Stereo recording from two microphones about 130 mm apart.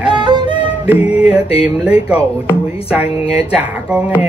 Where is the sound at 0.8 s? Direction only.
10° right (ahead or behind).